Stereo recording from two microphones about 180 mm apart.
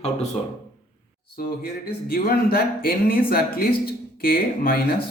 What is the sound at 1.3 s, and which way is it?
Speech, 55° left (ahead or behind).